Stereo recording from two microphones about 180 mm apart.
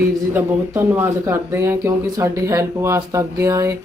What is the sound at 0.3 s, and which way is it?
Speech, 15° right (ahead or behind).